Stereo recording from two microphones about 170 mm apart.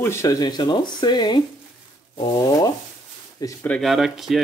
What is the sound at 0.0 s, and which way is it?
Speech, 15° left (ahead or behind).